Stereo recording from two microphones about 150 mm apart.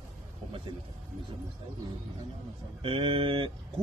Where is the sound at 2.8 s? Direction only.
35° right (ahead or behind).